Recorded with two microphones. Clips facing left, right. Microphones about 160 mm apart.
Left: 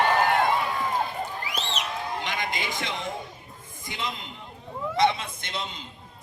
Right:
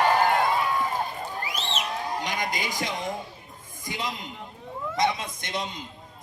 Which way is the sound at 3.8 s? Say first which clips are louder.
Right 1 dB; 45° right (ahead or behind).